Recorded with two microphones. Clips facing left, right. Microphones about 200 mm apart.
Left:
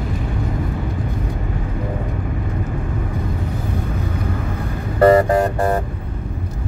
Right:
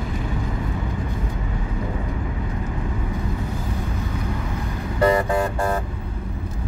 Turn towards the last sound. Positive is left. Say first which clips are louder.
# left 5 dB
turn(degrees=45)  # may be behind; listen again after turning